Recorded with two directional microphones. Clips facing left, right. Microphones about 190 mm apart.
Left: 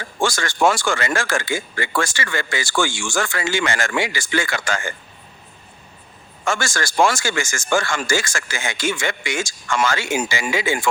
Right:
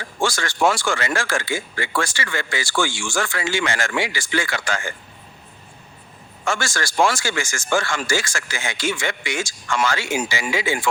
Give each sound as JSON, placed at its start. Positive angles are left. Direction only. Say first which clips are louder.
{"t": 0.2, "sound": "speech", "louder": "left 2 dB", "side_deg": 45}
{"t": 6.4, "sound": "speech", "louder": "left 1 dB", "side_deg": 45}